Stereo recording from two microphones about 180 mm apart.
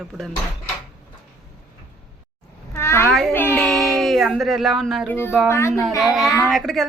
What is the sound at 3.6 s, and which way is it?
Music, centre (ahead or behind).